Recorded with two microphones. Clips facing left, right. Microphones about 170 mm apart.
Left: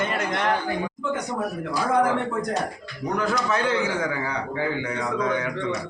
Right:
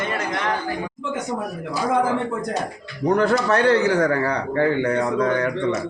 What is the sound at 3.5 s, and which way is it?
A man's voice, 65° right (ahead or behind).